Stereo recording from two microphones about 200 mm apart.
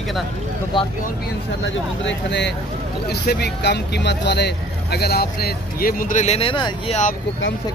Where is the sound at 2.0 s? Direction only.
60° left (ahead or behind); by 7.0 s 25° left (ahead or behind).